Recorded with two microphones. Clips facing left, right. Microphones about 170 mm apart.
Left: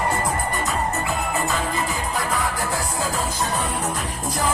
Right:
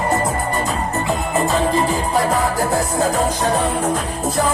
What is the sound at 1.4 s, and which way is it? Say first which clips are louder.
Music: right 11 dB; 35° right (ahead or behind).